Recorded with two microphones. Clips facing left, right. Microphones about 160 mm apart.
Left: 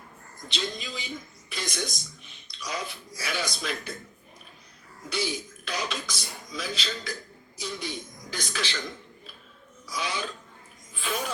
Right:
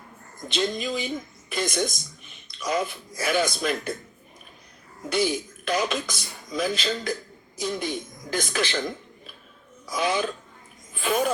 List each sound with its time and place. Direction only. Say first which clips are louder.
0.4 s speech: right 8 dB; 50° right (ahead or behind)
5.0 s speech: right 7 dB; 55° right (ahead or behind)
9.8 s speech: right 8 dB; 50° right (ahead or behind)